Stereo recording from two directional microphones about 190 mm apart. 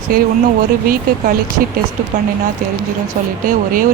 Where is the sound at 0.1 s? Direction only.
50° right (ahead or behind).